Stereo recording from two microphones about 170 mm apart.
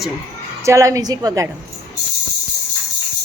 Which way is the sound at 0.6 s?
20° right (ahead or behind).